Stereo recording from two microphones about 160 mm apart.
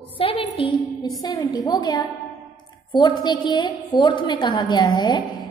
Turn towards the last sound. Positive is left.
turn(degrees=30)  # may be behind; listen again after turning